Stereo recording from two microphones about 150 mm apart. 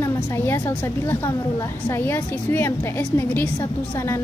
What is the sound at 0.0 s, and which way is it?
A woman's voice, 15° left (ahead or behind).